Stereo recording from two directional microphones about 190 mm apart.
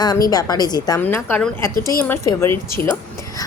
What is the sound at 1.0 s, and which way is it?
A woman's voice, 10° left (ahead or behind).